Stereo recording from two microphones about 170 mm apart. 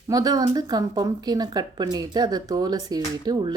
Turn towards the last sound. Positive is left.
turn(degrees=-25)  # may be behind; listen again after turning